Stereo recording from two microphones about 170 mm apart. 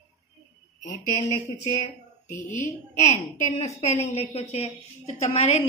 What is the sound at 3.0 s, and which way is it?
A woman's voice, 45° left (ahead or behind).